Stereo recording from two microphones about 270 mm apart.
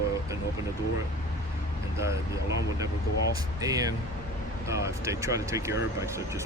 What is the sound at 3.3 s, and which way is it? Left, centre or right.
Speech, centre.